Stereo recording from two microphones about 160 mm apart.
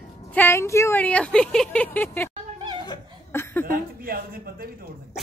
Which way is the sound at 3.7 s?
65° right (ahead or behind).